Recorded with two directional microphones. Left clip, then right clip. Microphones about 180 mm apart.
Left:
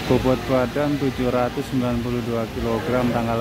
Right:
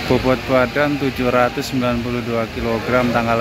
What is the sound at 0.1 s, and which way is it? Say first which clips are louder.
Speech: right 3 dB; 5° left (ahead or behind).